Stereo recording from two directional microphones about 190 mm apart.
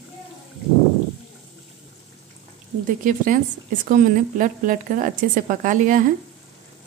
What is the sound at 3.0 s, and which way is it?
Speech, 45° right (ahead or behind).